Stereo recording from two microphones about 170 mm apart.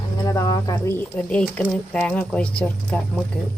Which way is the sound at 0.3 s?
20° left (ahead or behind).